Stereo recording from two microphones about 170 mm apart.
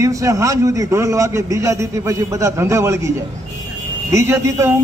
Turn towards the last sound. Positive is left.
turn(degrees=-15)  # may be behind; listen again after turning